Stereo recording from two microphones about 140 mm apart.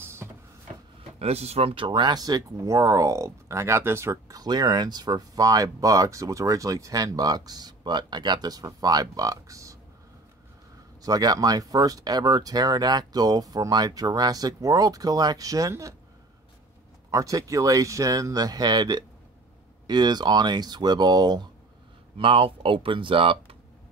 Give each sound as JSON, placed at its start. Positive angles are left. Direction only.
{"t": 0.0, "sound": "printer", "side_deg": -20}
{"t": 1.2, "sound": "speech", "side_deg": -50}
{"t": 11.0, "sound": "speech", "side_deg": -30}
{"t": 17.1, "sound": "speech", "side_deg": -25}
{"t": 22.1, "sound": "speech", "side_deg": -40}